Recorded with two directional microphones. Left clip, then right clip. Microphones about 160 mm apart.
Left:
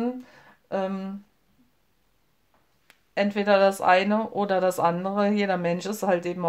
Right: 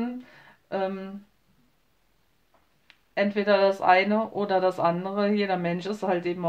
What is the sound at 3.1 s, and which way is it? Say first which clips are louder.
Speech: left 1 dB; 40° left (ahead or behind).